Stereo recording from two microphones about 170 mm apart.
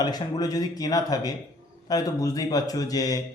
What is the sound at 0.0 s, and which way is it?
Speech, 25° left (ahead or behind).